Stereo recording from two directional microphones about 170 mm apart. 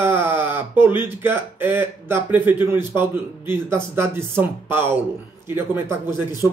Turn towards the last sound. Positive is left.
turn(degrees=-15)  # may be behind; listen again after turning